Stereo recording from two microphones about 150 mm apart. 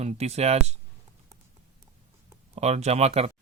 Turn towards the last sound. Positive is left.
turn(degrees=-45)  # may be behind; listen again after turning